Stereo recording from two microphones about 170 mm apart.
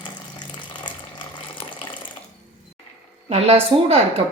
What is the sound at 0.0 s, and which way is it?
Water, 25° left (ahead or behind).